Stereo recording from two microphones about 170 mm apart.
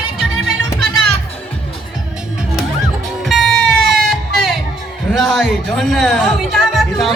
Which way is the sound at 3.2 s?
Centre (ahead or behind).